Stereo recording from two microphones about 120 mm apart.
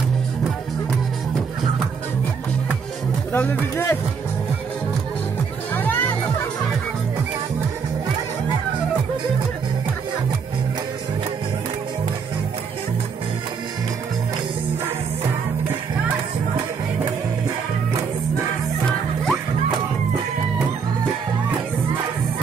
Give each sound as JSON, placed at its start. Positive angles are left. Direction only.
{"t": 3.3, "sound": "speech", "side_deg": 20}
{"t": 5.8, "sound": "music", "side_deg": 15}